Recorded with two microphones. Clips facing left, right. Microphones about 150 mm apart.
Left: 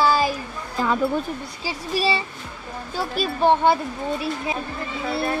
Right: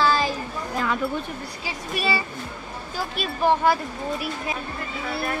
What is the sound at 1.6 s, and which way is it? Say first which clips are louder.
Speech: left 4 dB; 30° left (ahead or behind).